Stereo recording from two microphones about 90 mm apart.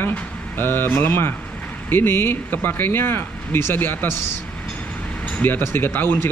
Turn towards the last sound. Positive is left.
turn(degrees=20)  # may be behind; listen again after turning